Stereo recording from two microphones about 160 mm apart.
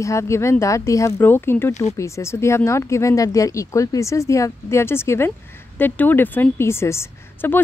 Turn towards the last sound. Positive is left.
turn(degrees=15)  # may be behind; listen again after turning